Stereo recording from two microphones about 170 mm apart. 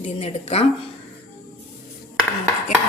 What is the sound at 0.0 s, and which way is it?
Speech, 40° left (ahead or behind).